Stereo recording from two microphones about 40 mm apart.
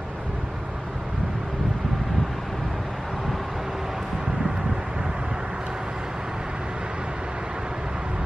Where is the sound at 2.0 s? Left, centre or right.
Centre.